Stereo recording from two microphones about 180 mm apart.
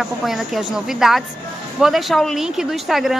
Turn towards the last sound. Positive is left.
turn(degrees=0)  # may be behind; listen again after turning